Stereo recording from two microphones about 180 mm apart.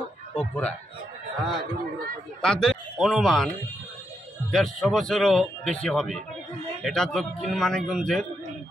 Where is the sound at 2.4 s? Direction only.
5° left (ahead or behind).